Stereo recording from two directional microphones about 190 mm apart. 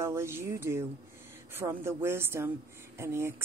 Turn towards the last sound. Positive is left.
turn(degrees=-15)  # may be behind; listen again after turning